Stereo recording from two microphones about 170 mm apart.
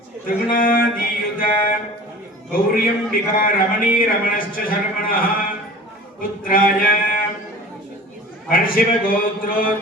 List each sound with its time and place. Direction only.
0.5 s music: 55° left (ahead or behind)
2.5 s speech: 55° left (ahead or behind)
6.4 s speech: 55° left (ahead or behind)
8.4 s speech: 55° left (ahead or behind)